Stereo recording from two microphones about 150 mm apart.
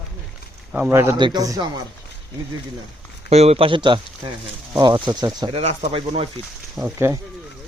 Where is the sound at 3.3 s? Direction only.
45° right (ahead or behind); by 5.6 s 30° right (ahead or behind).